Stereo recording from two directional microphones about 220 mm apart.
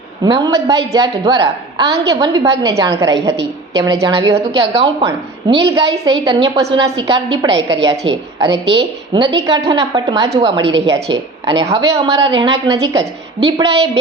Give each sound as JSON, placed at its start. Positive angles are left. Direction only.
{"t": 0.3, "sound": "a woman's voice", "side_deg": -15}
{"t": 8.4, "sound": "a woman's voice", "side_deg": -50}
{"t": 9.5, "sound": "speech", "side_deg": -15}